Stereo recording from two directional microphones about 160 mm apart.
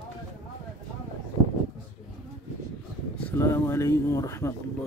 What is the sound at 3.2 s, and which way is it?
Speech, 10° left (ahead or behind).